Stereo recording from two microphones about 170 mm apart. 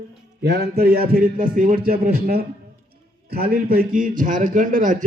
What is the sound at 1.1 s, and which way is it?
A man's voice, 60° right (ahead or behind).